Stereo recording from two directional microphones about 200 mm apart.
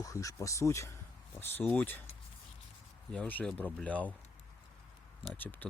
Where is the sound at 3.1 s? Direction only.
5° left (ahead or behind).